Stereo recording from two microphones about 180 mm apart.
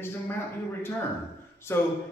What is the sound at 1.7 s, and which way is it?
Speech, 15° left (ahead or behind).